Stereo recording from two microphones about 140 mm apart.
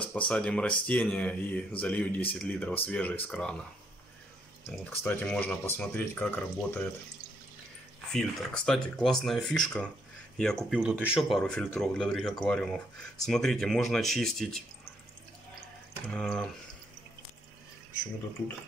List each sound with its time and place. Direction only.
0.1 s speech: 10° left (ahead or behind)
5.0 s speech: 10° left (ahead or behind)
8.1 s speech: centre (ahead or behind)
10.7 s speech: 5° right (ahead or behind)
16.1 s speech: 5° left (ahead or behind)